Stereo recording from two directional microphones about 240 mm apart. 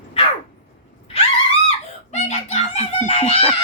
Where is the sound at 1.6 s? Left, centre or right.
Left.